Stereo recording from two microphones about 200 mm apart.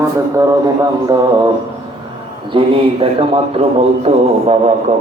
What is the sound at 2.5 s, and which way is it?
A man's voice, 25° right (ahead or behind).